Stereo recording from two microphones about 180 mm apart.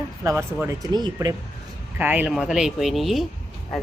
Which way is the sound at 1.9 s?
10° right (ahead or behind).